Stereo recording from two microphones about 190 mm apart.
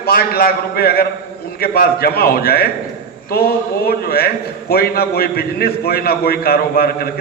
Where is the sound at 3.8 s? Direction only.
55° left (ahead or behind).